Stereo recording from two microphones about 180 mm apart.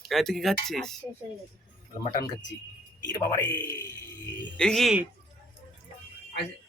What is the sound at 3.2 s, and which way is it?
A man's voice, 20° left (ahead or behind).